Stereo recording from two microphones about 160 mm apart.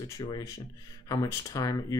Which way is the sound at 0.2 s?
20° left (ahead or behind).